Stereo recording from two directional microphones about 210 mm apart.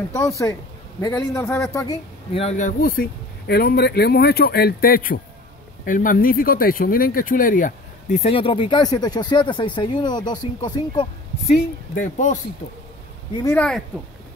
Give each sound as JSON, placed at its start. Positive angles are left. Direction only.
{"t": 0.1, "sound": "a man's voice", "side_deg": 15}
{"t": 2.3, "sound": "speech", "side_deg": 35}
{"t": 11.9, "sound": "speech", "side_deg": 35}
{"t": 13.4, "sound": "speech", "side_deg": 10}